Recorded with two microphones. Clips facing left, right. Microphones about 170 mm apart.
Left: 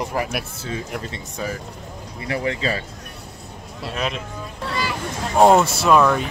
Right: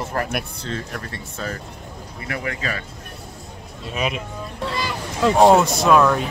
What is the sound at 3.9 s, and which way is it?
Speech, 5° right (ahead or behind).